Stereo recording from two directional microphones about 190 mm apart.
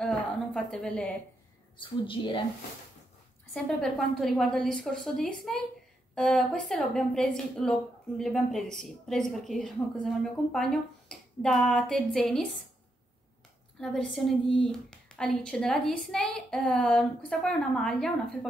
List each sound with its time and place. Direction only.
0.0 s a sound: 5° left (ahead or behind)
1.8 s a woman's voice: 25° left (ahead or behind)
3.5 s a woman's voice: 5° left (ahead or behind)
13.7 s a woman's voice: centre (ahead or behind)